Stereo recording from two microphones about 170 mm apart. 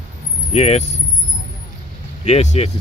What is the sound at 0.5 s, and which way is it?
Speech, 40° left (ahead or behind).